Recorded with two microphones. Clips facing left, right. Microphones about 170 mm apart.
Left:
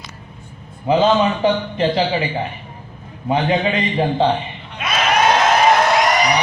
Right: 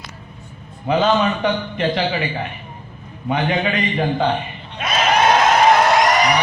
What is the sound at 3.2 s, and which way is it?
A man's voice, 25° left (ahead or behind).